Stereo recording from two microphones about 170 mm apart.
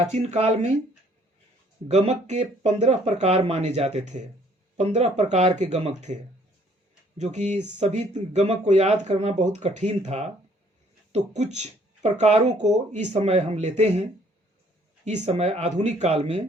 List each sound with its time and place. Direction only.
0.1 s speech: 40° right (ahead or behind)
1.9 s speech: 40° right (ahead or behind)
7.2 s speech: 45° right (ahead or behind)